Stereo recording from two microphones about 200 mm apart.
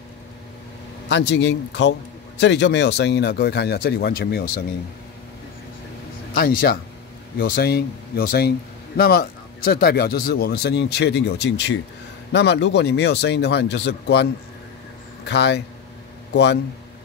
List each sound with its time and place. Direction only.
1.0 s speech: 60° left (ahead or behind)
6.3 s a man's voice: 50° left (ahead or behind)